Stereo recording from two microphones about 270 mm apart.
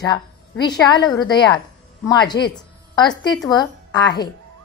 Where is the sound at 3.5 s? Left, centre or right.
Centre.